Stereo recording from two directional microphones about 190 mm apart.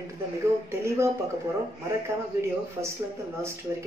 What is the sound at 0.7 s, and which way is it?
Speech, 15° right (ahead or behind).